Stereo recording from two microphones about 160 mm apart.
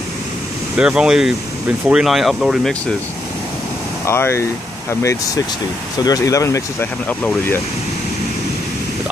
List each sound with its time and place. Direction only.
0.7 s speech: 5° right (ahead or behind)
4.0 s speech: 15° left (ahead or behind)
6.0 s speech: 20° left (ahead or behind)